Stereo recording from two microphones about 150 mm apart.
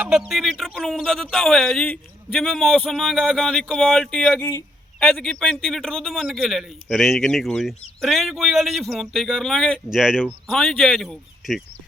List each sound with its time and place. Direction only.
0.0 s a man's voice: 5° right (ahead or behind)
4.4 s speech: 20° left (ahead or behind)
4.9 s a man's voice: centre (ahead or behind)